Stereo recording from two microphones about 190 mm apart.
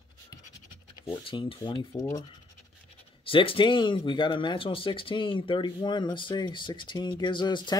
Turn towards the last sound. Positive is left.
turn(degrees=25)  # may be behind; listen again after turning